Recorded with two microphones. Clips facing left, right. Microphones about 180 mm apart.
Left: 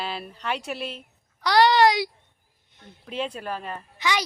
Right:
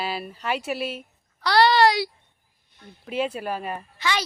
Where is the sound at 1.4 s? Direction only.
15° left (ahead or behind).